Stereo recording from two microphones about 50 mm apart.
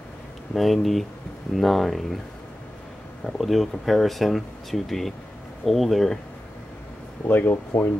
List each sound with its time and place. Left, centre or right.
0.6 s speech: centre
3.3 s speech: centre
7.2 s speech: left